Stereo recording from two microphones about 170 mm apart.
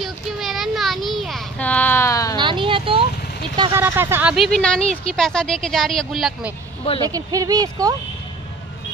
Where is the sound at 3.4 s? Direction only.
25° right (ahead or behind).